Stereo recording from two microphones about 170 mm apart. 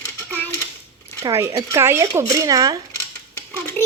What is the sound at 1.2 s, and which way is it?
Speech, 20° right (ahead or behind).